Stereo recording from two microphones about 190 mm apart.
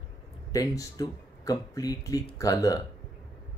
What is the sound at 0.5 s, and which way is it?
Speech, 20° left (ahead or behind).